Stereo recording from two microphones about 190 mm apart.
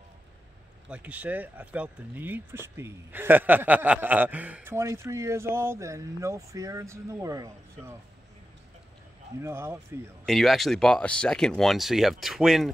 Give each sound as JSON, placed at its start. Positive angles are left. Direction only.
{"t": 0.8, "sound": "speech", "side_deg": -5}
{"t": 9.4, "sound": "speech", "side_deg": -15}
{"t": 10.2, "sound": "speech", "side_deg": 0}